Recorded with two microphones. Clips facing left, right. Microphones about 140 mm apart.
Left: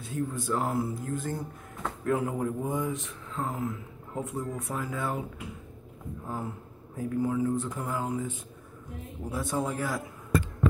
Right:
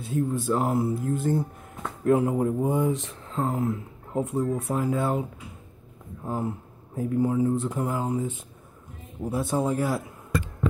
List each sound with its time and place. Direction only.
0.0 s speech: 25° right (ahead or behind)
6.2 s speech: 25° right (ahead or behind)